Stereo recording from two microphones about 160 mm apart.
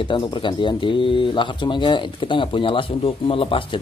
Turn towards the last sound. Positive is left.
turn(degrees=35)  # may be behind; listen again after turning